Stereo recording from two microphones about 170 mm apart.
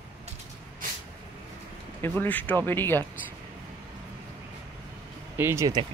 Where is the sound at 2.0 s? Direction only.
10° left (ahead or behind).